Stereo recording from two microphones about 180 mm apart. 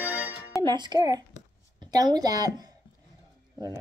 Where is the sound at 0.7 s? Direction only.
25° right (ahead or behind).